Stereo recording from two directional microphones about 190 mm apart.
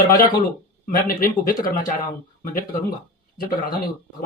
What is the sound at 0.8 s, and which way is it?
Speech, 45° left (ahead or behind).